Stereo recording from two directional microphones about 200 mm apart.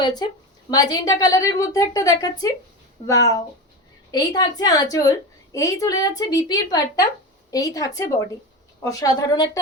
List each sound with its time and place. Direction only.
0.0 s a woman's voice: 20° left (ahead or behind)